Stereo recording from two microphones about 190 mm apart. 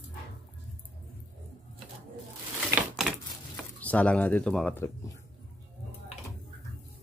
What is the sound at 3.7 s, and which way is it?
Speech, 5° left (ahead or behind).